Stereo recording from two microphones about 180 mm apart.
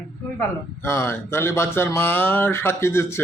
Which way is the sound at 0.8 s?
15° left (ahead or behind).